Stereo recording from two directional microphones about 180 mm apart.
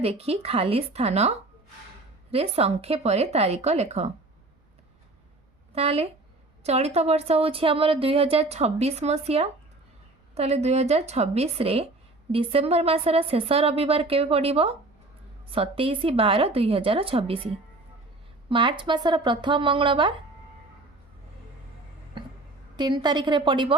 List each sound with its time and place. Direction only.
0.0 s a woman's voice: 35° right (ahead or behind)
5.7 s a woman's voice: 35° right (ahead or behind)
22.8 s speech: 25° right (ahead or behind)